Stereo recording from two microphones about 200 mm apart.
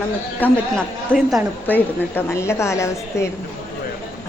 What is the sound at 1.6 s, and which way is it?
A woman's voice, 10° left (ahead or behind).